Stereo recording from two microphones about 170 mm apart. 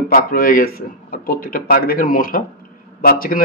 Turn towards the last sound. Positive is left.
turn(degrees=55)  # may be behind; listen again after turning